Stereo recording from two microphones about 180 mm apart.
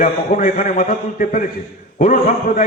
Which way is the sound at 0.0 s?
45° left (ahead or behind).